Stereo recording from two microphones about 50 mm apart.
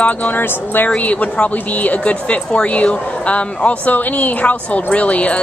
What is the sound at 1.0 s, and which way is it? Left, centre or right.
A woman's voice, left.